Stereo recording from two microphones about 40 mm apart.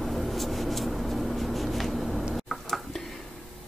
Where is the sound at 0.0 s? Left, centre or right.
Centre.